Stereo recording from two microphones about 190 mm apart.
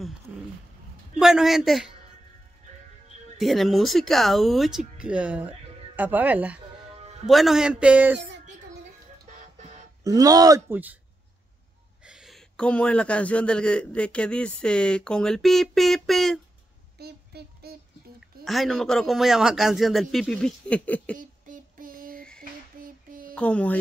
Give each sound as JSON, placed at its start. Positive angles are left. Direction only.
{"t": 1.2, "sound": "a man's voice", "side_deg": 0}
{"t": 3.3, "sound": "a man's voice", "side_deg": 0}
{"t": 10.0, "sound": "speech", "side_deg": -20}
{"t": 12.0, "sound": "a man's voice", "side_deg": -5}
{"t": 17.0, "sound": "a sound", "side_deg": -55}
{"t": 18.4, "sound": "a man's voice", "side_deg": 0}
{"t": 21.2, "sound": "child singing", "side_deg": -45}
{"t": 23.3, "sound": "speech", "side_deg": 5}